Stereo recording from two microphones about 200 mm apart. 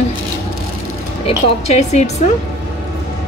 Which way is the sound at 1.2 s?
30° left (ahead or behind).